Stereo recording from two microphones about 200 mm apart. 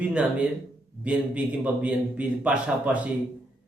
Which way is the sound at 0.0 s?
5° right (ahead or behind).